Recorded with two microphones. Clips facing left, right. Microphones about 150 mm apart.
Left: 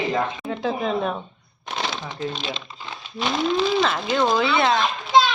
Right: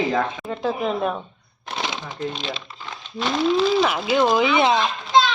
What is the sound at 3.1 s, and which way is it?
Speech, centre (ahead or behind).